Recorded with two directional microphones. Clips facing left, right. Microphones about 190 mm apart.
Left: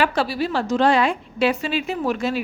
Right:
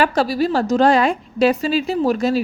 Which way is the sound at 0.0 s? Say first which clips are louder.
Right 4 dB; 40° right (ahead or behind).